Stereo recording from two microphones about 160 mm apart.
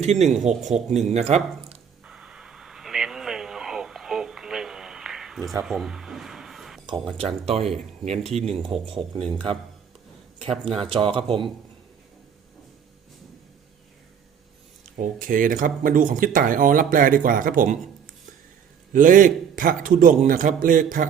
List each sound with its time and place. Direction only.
0.0 s speech: 45° right (ahead or behind)
2.0 s a sound: 5° right (ahead or behind)
7.1 s speech: 40° right (ahead or behind)
10.3 s speech: 40° right (ahead or behind)
14.9 s speech: 55° right (ahead or behind)